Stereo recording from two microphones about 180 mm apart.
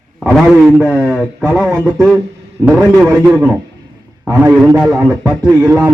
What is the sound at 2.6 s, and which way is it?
Speech, 5° right (ahead or behind).